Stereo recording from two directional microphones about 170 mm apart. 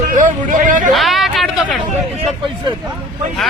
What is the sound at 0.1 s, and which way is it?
Speech, 50° right (ahead or behind).